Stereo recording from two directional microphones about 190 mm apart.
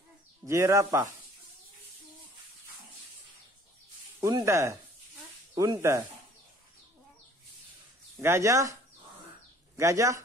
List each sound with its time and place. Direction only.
0.5 s speech: 15° right (ahead or behind)
4.2 s speech: 15° right (ahead or behind)
8.2 s speech: 15° right (ahead or behind)
9.8 s speech: 15° right (ahead or behind)